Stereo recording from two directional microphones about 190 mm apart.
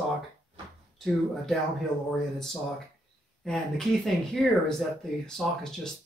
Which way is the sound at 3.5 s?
5° left (ahead or behind).